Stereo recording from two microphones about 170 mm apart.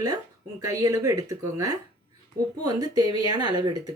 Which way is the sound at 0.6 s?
20° right (ahead or behind).